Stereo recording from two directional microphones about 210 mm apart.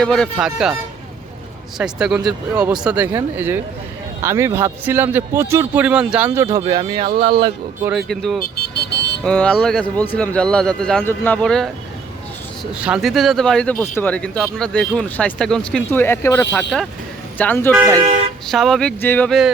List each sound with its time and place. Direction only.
0.0 s speech: centre (ahead or behind)
1.8 s a man's voice: 5° right (ahead or behind); by 7.3 s 25° right (ahead or behind)
7.9 s speech: centre (ahead or behind)
12.8 s speech: centre (ahead or behind)
16.6 s a man's voice: centre (ahead or behind)
17.7 s a man's voice: 15° right (ahead or behind)
18.5 s speech: centre (ahead or behind)